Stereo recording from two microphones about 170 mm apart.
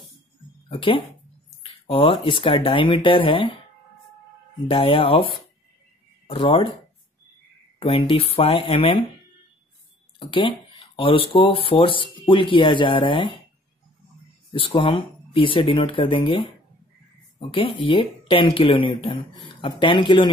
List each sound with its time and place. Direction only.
0.7 s speech: 30° left (ahead or behind)
4.6 s speech: 30° left (ahead or behind)
7.8 s speech: 30° left (ahead or behind)
10.1 s speech: 30° left (ahead or behind)
14.5 s speech: 30° left (ahead or behind)